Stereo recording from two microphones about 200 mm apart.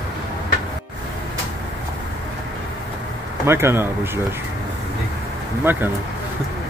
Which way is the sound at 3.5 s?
10° right (ahead or behind).